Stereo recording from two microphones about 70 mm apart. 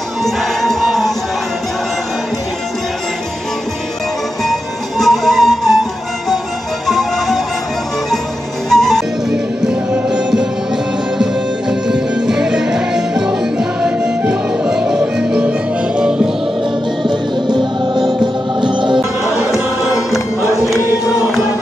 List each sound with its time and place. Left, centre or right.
0.2 s music: centre
4.5 s music: centre
8.6 s music: centre
9.3 s music: centre
11.9 s music: centre
17.5 s music: right